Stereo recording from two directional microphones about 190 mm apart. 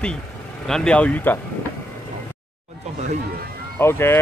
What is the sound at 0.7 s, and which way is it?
Speech, 5° left (ahead or behind).